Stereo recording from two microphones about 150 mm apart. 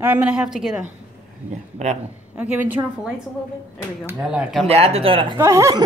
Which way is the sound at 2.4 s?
10° right (ahead or behind).